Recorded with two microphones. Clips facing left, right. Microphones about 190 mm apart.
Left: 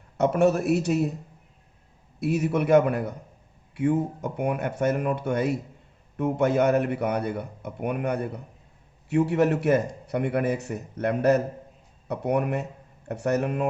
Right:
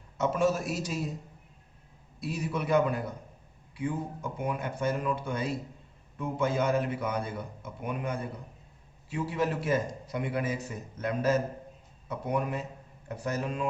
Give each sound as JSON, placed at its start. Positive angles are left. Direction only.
{"t": 0.2, "sound": "a man's voice", "side_deg": 65}
{"t": 2.1, "sound": "a man's voice", "side_deg": 70}